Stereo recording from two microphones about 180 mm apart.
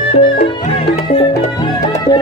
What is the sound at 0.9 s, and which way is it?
Music, 30° left (ahead or behind).